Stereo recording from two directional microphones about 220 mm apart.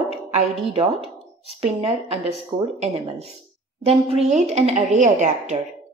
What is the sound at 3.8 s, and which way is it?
Speech, 30° right (ahead or behind).